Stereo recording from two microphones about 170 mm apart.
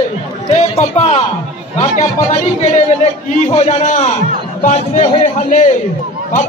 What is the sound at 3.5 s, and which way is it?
A man's voice, 40° left (ahead or behind).